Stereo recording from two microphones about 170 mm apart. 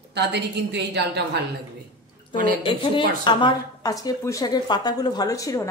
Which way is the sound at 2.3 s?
30° left (ahead or behind).